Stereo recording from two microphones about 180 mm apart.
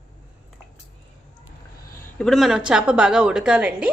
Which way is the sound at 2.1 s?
Centre (ahead or behind).